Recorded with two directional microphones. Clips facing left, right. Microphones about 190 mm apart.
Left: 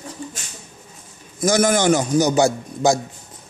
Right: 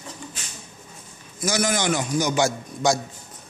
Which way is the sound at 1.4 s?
50° left (ahead or behind).